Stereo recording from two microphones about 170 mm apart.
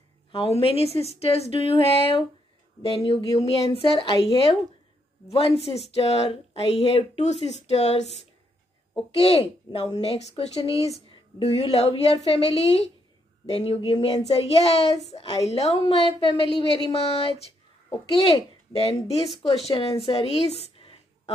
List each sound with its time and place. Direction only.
0.3 s speech: 35° left (ahead or behind)
5.6 s speech: 35° left (ahead or behind)
9.1 s speech: 35° left (ahead or behind)
14.2 s speech: 35° left (ahead or behind)